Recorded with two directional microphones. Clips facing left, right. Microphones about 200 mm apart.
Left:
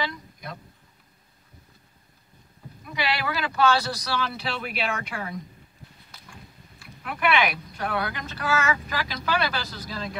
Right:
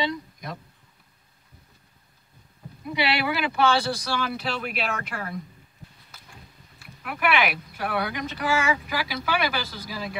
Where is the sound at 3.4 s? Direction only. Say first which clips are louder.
Left 2 dB; 10° right (ahead or behind).